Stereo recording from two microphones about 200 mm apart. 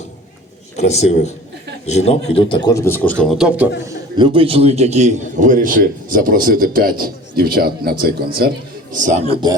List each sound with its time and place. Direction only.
0.8 s speech: 35° left (ahead or behind); by 3.7 s 5° right (ahead or behind)
3.8 s a man's voice: 25° right (ahead or behind); by 8.5 s 50° right (ahead or behind)
9.0 s a man's voice: 40° right (ahead or behind)